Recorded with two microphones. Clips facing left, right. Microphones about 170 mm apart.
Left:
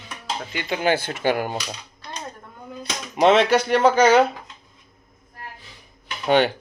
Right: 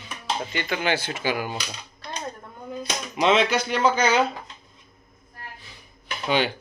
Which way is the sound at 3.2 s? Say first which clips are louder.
Left 5 dB; 60° left (ahead or behind).